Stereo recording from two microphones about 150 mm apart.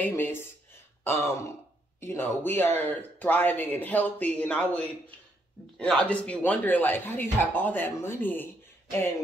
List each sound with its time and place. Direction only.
0.0 s speech: 15° left (ahead or behind)
1.0 s a sound: 15° left (ahead or behind)
2.0 s speech: 15° left (ahead or behind)